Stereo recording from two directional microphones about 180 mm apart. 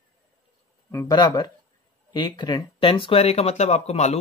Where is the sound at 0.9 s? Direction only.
20° left (ahead or behind); by 4.1 s 40° left (ahead or behind).